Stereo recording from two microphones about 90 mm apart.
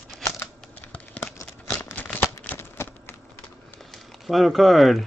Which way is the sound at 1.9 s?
20° left (ahead or behind).